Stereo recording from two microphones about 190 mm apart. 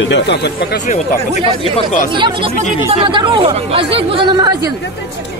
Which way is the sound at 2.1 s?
25° right (ahead or behind).